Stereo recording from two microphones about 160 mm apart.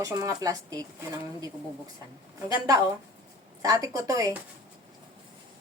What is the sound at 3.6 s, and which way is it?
Speech, 20° right (ahead or behind).